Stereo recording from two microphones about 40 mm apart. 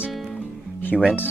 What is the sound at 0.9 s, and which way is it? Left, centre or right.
Speech, centre.